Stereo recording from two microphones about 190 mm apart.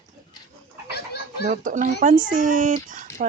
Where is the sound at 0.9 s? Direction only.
55° left (ahead or behind).